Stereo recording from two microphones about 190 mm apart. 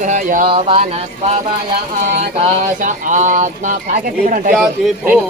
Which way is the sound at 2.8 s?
45° right (ahead or behind).